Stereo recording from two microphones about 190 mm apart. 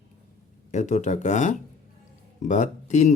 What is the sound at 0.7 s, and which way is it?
Speech, 40° left (ahead or behind).